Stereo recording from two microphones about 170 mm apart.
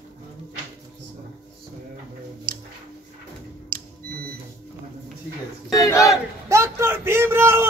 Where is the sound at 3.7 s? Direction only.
55° right (ahead or behind).